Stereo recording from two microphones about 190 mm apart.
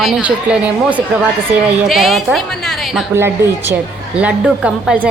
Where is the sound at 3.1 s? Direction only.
10° right (ahead or behind).